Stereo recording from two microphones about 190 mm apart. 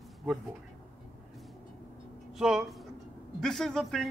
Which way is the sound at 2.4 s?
5° right (ahead or behind).